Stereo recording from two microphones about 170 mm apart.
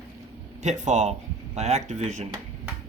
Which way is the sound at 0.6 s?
45° right (ahead or behind).